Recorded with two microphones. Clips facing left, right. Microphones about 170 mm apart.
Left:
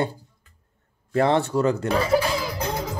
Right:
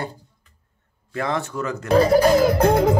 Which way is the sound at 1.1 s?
30° left (ahead or behind).